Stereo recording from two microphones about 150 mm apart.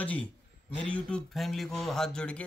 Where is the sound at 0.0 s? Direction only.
10° left (ahead or behind).